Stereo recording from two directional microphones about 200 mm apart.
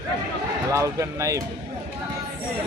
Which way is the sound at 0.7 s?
15° right (ahead or behind).